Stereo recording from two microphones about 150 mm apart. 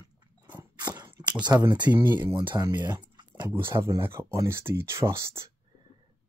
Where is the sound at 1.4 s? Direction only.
25° right (ahead or behind).